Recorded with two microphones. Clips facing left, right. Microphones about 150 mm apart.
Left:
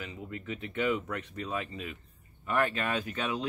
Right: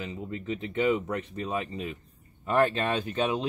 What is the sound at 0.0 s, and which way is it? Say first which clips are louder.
Speech: right 5 dB; 25° right (ahead or behind).